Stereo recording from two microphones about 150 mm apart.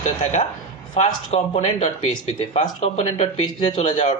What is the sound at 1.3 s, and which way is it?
Speech, 40° left (ahead or behind).